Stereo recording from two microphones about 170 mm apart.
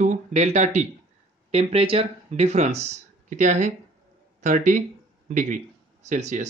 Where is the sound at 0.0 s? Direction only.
45° right (ahead or behind).